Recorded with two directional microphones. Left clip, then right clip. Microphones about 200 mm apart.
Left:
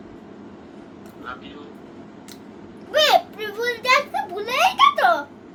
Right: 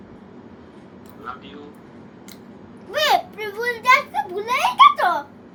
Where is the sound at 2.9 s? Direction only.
5° left (ahead or behind).